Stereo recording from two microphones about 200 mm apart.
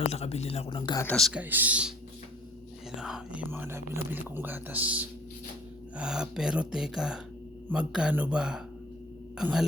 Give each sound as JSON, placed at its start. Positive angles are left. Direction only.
{"t": 0.0, "sound": "speech", "side_deg": 30}
{"t": 1.0, "sound": "speech", "side_deg": 0}
{"t": 3.0, "sound": "speech", "side_deg": -5}